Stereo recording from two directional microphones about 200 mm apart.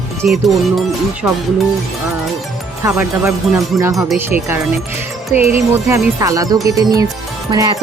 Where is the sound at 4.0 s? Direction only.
Centre (ahead or behind).